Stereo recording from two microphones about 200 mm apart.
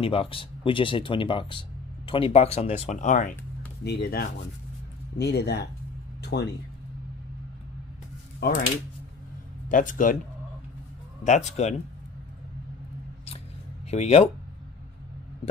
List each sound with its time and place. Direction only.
0.0 s speech: 25° left (ahead or behind)
3.8 s speech: 55° left (ahead or behind)
8.4 s speech: 50° left (ahead or behind)
9.7 s speech: 40° left (ahead or behind)
11.2 s speech: 35° left (ahead or behind)
13.8 s speech: 35° left (ahead or behind)